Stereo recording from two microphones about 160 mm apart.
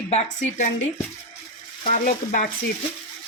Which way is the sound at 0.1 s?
45° left (ahead or behind).